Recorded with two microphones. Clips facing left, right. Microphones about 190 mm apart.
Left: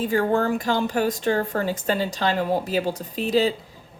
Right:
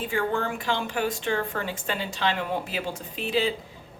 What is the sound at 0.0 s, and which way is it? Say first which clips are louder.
Speech: left 6 dB; 40° left (ahead or behind).